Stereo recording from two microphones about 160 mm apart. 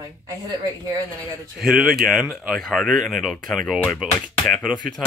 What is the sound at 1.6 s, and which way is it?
Speech, centre (ahead or behind).